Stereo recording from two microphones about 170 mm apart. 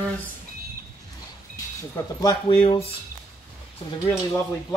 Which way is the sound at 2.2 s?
25° left (ahead or behind).